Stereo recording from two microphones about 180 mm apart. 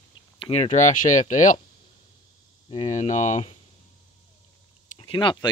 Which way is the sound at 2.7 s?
40° left (ahead or behind).